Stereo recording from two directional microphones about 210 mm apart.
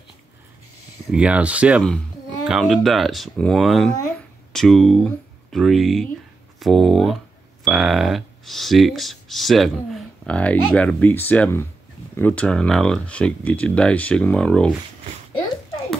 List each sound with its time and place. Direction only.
1.1 s speech: 5° right (ahead or behind)